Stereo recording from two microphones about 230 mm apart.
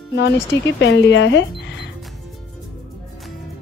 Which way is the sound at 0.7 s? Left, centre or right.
Left.